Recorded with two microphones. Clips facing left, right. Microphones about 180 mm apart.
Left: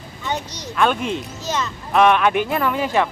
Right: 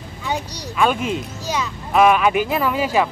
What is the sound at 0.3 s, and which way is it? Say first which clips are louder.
Speech: right 1 dB; 5° right (ahead or behind).